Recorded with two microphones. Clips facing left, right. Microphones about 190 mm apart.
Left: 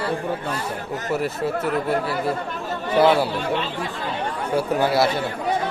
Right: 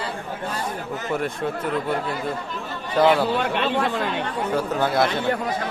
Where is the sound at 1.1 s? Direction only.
5° left (ahead or behind).